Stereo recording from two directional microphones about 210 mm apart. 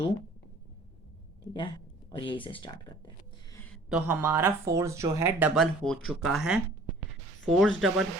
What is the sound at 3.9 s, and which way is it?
Speech, 10° right (ahead or behind).